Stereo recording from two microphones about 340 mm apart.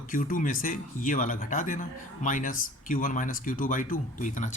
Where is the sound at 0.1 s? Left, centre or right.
Left.